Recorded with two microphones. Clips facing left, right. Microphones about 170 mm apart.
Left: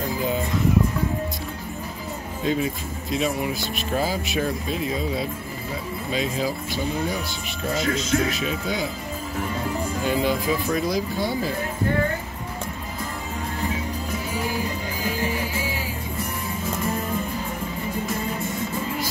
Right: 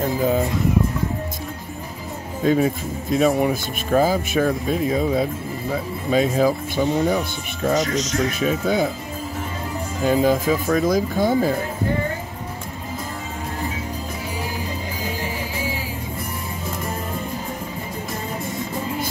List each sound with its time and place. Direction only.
2.4 s speech: 45° right (ahead or behind)
7.7 s speech: 40° right (ahead or behind)
10.0 s speech: 40° right (ahead or behind)